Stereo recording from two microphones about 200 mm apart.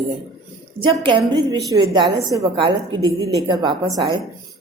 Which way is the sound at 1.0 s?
25° right (ahead or behind).